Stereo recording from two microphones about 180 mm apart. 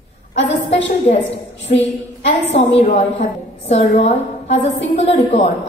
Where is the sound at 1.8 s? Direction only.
35° left (ahead or behind).